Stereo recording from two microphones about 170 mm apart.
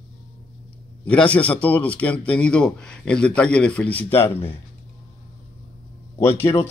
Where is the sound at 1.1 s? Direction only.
5° left (ahead or behind).